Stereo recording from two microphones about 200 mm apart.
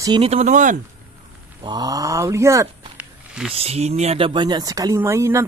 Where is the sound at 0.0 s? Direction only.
25° right (ahead or behind).